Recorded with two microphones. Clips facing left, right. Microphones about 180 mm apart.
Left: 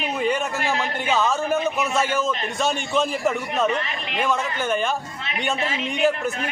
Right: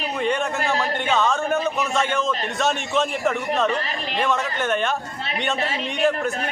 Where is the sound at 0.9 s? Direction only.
5° left (ahead or behind).